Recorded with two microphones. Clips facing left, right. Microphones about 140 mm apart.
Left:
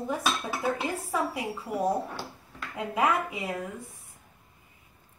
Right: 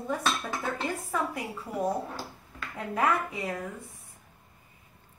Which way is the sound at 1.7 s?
15° left (ahead or behind).